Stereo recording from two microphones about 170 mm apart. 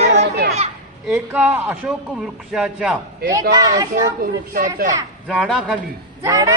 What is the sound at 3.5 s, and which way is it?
Speech, 20° right (ahead or behind).